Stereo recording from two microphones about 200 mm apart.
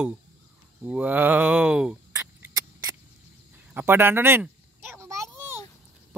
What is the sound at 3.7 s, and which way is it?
Speech, 10° right (ahead or behind).